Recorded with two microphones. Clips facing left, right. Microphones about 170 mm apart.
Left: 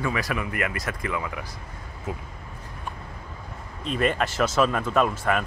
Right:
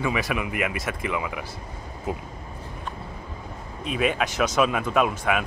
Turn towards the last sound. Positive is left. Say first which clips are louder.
# even
turn(degrees=-5)  # may be behind; listen again after turning